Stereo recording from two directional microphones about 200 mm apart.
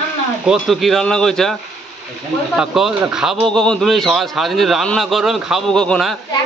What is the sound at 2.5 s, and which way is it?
A man's voice, centre (ahead or behind).